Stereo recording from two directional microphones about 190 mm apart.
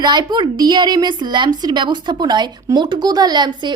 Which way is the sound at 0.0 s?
25° right (ahead or behind).